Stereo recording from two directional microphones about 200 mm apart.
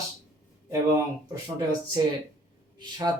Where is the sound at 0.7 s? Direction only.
15° right (ahead or behind).